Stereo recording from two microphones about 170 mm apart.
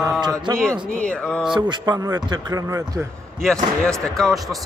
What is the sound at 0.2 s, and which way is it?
Speech, 20° right (ahead or behind).